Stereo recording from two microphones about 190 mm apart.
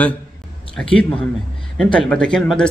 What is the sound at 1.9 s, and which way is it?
Speech, 5° left (ahead or behind).